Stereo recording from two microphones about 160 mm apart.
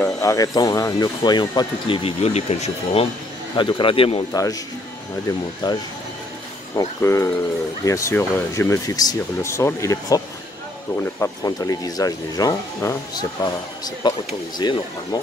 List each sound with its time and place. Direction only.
0.0 s speech: 20° left (ahead or behind); by 3.1 s 40° left (ahead or behind)
3.5 s speech: 30° left (ahead or behind)
5.6 s speech: 25° left (ahead or behind)